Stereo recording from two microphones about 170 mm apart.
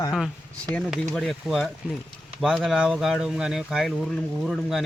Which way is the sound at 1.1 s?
Centre (ahead or behind).